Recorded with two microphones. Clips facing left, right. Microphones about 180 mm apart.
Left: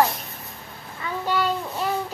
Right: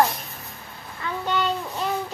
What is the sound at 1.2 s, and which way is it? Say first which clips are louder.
Child singing: left 1 dB; 10° left (ahead or behind).